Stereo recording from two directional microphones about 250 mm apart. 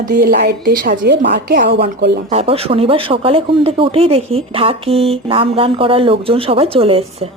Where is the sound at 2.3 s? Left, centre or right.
Right.